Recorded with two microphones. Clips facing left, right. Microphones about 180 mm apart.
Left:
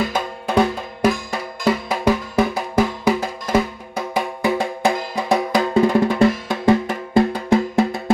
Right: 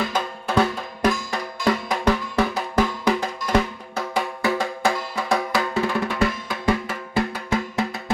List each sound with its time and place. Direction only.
0.1 s music: 15° left (ahead or behind)
5.1 s drum: 20° left (ahead or behind)